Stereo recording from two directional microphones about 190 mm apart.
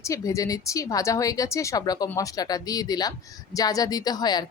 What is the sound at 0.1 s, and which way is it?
Speech, 15° left (ahead or behind).